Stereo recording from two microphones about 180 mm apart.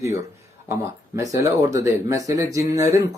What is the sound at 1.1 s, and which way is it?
Speech, 20° right (ahead or behind).